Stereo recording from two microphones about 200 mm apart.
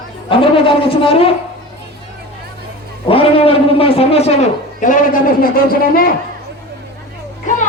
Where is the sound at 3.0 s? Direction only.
25° left (ahead or behind); by 6.0 s 45° left (ahead or behind).